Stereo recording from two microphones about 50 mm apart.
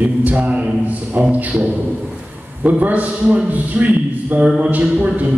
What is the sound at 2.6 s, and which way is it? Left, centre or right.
A man's voice, right.